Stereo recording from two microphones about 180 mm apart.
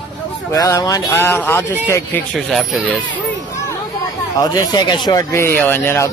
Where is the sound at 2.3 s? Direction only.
Centre (ahead or behind).